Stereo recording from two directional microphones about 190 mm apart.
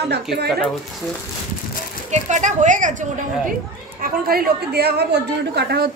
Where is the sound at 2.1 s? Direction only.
40° right (ahead or behind).